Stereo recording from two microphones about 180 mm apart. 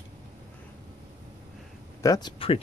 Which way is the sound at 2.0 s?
20° left (ahead or behind).